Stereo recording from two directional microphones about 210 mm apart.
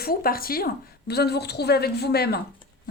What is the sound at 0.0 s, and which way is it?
A woman's voice, 45° left (ahead or behind).